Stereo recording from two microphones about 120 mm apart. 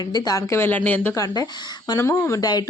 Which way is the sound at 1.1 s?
30° left (ahead or behind).